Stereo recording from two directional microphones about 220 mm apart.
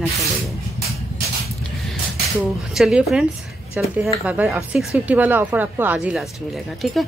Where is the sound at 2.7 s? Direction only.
Centre (ahead or behind).